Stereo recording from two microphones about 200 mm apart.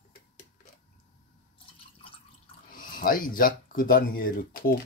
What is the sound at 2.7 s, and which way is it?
Speech, 45° left (ahead or behind).